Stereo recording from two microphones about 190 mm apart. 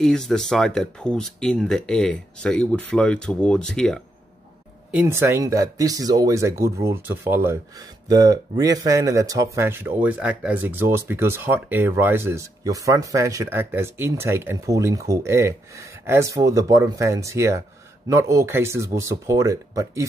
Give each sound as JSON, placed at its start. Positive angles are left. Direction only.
{"t": 0.0, "sound": "speech", "side_deg": 5}
{"t": 4.9, "sound": "speech", "side_deg": -15}